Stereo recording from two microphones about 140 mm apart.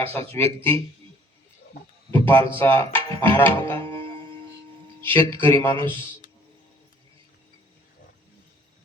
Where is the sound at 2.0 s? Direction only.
15° left (ahead or behind).